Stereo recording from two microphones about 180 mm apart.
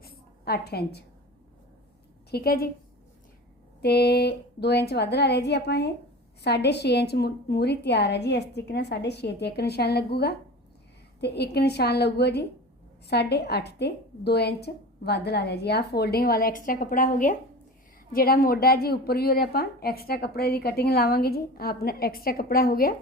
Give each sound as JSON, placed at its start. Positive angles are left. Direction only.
{"t": 0.0, "sound": "a sound", "side_deg": 60}
{"t": 2.3, "sound": "a woman's voice", "side_deg": 60}
{"t": 3.8, "sound": "a woman's voice", "side_deg": 65}